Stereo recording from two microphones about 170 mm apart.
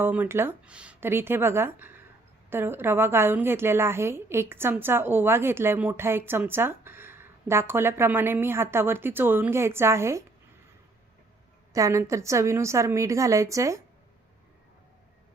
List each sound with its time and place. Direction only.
0.0 s a woman's voice: 10° right (ahead or behind)
11.7 s a woman's voice: 20° right (ahead or behind)